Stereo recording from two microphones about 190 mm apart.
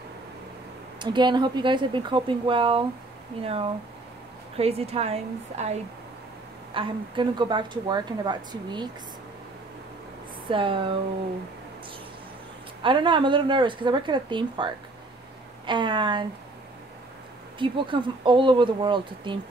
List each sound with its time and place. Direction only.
0.9 s a woman's voice: 25° right (ahead or behind)
10.5 s speech: 25° right (ahead or behind)
12.8 s speech: 25° right (ahead or behind)
17.6 s speech: 25° right (ahead or behind)